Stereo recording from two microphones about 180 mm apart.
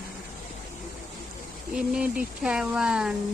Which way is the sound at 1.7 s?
5° right (ahead or behind).